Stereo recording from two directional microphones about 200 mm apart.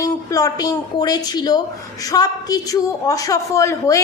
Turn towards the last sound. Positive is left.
turn(degrees=15)  # may be behind; listen again after turning